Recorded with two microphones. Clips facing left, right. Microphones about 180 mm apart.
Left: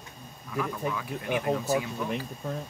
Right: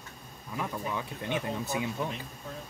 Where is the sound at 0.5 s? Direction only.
25° right (ahead or behind).